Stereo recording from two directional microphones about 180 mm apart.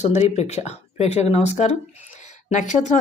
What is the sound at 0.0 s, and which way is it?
Speech, 40° left (ahead or behind).